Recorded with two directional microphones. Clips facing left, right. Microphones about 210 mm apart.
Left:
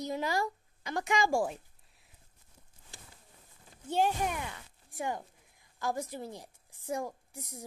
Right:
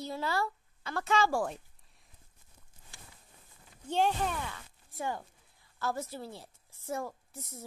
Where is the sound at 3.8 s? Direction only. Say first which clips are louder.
Even; 10° left (ahead or behind).